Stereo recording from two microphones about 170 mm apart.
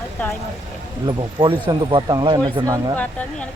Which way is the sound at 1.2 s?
25° right (ahead or behind).